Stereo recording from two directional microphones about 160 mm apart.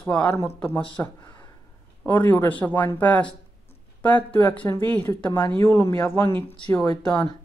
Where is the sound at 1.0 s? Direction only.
25° left (ahead or behind).